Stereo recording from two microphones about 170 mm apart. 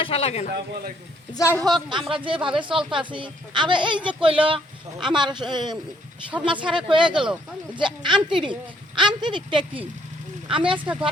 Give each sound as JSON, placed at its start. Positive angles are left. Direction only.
{"t": 0.0, "sound": "speech", "side_deg": 35}
{"t": 1.5, "sound": "a woman's voice", "side_deg": -20}
{"t": 1.9, "sound": "speech", "side_deg": -30}